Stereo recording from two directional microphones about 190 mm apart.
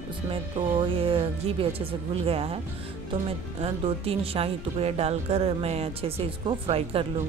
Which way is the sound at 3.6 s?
30° right (ahead or behind).